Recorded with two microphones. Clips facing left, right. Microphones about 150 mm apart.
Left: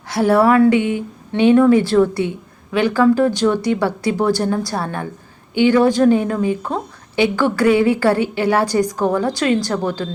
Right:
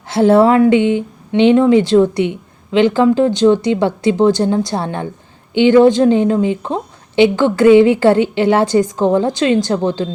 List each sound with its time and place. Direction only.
0.1 s a woman's voice: 25° right (ahead or behind)